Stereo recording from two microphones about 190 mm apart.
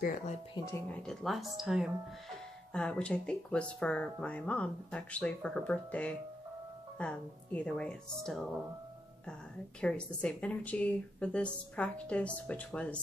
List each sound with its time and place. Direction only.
0.6 s a woman's voice: 15° left (ahead or behind)
9.8 s speech: 5° left (ahead or behind)